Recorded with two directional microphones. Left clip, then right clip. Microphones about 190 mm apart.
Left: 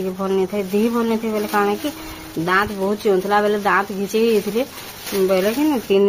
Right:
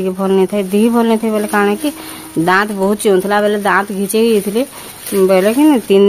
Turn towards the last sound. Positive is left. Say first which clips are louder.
# right 7 dB
turn(degrees=-55)  # may be behind; listen again after turning